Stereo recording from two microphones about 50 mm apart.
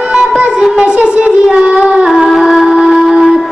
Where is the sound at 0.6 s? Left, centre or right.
Centre.